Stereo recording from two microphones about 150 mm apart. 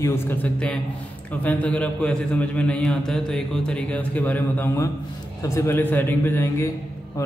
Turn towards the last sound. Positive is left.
turn(degrees=15)  # may be behind; listen again after turning